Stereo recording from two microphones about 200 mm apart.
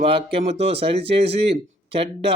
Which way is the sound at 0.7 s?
30° right (ahead or behind).